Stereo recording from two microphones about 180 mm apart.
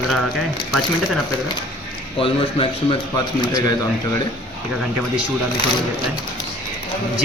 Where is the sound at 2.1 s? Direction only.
30° left (ahead or behind).